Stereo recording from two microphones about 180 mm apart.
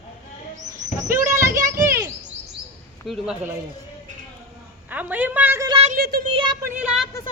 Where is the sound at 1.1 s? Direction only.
15° right (ahead or behind).